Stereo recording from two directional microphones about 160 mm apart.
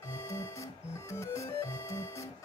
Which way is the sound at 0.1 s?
20° left (ahead or behind).